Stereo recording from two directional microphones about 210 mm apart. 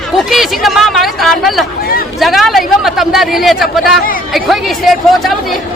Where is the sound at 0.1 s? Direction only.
Centre (ahead or behind).